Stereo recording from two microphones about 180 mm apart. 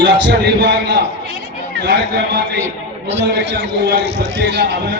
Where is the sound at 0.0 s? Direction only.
80° right.